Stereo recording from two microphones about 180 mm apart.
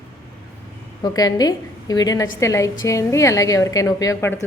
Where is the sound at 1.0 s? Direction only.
20° left (ahead or behind).